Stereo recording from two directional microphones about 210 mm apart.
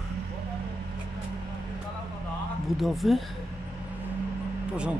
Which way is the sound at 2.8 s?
Centre (ahead or behind).